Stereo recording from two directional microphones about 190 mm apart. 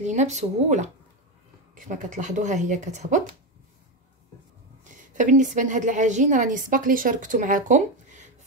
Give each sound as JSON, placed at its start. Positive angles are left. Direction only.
{"t": 0.0, "sound": "a woman's voice", "side_deg": -40}
{"t": 4.9, "sound": "a woman's voice", "side_deg": -40}